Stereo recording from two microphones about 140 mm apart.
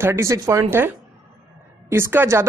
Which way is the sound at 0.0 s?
20° right (ahead or behind).